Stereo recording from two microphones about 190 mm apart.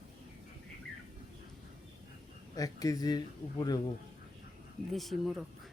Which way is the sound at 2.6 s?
20° left (ahead or behind).